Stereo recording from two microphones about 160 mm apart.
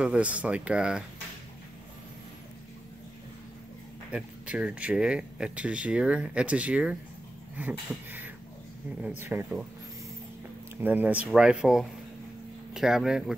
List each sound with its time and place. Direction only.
0.0 s speech: 10° right (ahead or behind)
4.1 s speech: 5° right (ahead or behind)
9.0 s speech: 15° right (ahead or behind)
10.8 s speech: 10° right (ahead or behind)